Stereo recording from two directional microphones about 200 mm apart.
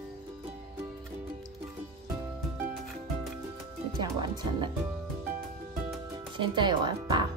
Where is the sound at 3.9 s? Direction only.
25° right (ahead or behind).